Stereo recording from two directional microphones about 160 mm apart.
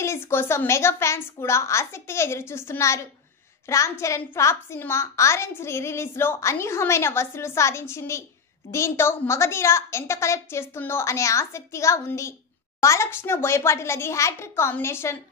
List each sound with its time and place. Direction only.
0.0 s a woman's voice: 15° left (ahead or behind)